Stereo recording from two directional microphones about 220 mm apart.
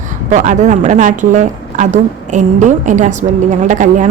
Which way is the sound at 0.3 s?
35° right (ahead or behind).